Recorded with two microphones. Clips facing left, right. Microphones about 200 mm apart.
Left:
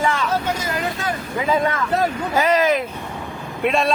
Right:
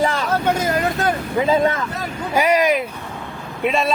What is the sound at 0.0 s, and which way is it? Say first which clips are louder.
Vehicle: right 1 dB; 35° right (ahead or behind).